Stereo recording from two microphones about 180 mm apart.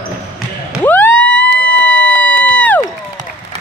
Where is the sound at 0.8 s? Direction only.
10° left (ahead or behind).